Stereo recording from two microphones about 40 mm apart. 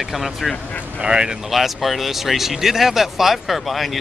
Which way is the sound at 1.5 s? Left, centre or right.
Centre.